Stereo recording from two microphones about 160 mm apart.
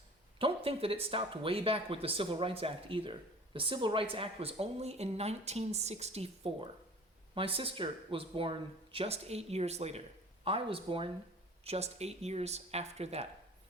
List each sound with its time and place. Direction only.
0.3 s speech: 35° right (ahead or behind)